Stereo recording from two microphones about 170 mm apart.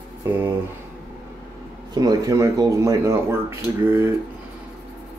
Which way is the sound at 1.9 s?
20° right (ahead or behind).